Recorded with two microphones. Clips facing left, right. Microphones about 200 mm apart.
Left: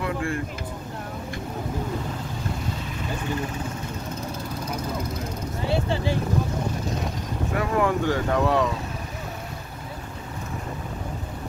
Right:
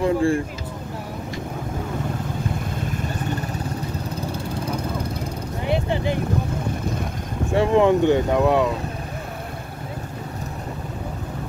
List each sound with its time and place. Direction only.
0.0 s speech: 30° right (ahead or behind)
5.7 s a sound: 15° right (ahead or behind)
7.5 s speech: 25° right (ahead or behind)